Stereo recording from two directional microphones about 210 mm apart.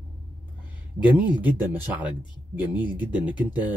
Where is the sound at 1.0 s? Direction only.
5° right (ahead or behind).